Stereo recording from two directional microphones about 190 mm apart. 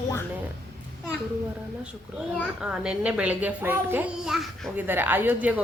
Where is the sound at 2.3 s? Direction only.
Centre (ahead or behind).